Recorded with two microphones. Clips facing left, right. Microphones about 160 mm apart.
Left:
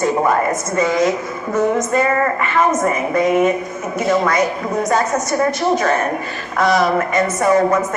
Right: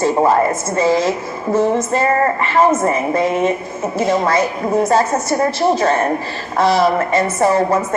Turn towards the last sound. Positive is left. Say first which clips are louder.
# left 1 dB
turn(degrees=-30)  # may be behind; listen again after turning